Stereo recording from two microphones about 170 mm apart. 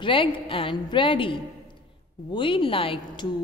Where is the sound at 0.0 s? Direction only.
30° left (ahead or behind).